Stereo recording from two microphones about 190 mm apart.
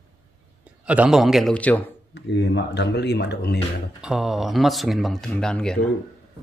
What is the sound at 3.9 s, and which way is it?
Speech, 5° right (ahead or behind).